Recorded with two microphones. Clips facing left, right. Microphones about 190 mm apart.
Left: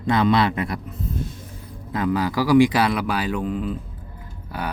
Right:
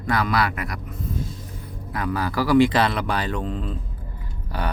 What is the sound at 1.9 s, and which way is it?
A man's voice, 20° left (ahead or behind).